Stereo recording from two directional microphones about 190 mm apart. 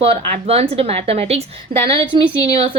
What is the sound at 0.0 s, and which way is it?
A woman's voice, 30° right (ahead or behind).